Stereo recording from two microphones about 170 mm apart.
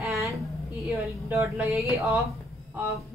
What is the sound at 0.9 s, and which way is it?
A woman's voice, 15° right (ahead or behind).